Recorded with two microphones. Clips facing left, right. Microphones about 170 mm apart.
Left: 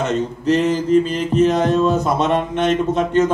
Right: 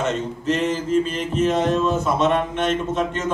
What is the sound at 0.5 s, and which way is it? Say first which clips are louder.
Mantra: left 6 dB; 35° left (ahead or behind).